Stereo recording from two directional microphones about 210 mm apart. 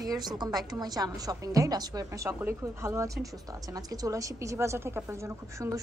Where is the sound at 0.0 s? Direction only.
15° right (ahead or behind).